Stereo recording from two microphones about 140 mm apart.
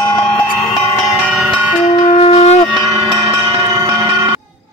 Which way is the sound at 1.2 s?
10° right (ahead or behind).